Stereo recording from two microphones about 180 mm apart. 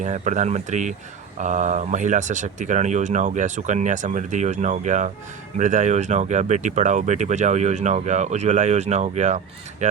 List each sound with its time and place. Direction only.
0.0 s speech: 40° right (ahead or behind)